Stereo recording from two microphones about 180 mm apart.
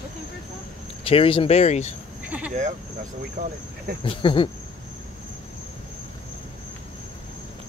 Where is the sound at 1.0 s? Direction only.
30° left (ahead or behind).